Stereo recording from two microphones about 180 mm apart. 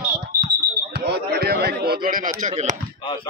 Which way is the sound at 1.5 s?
60° right (ahead or behind).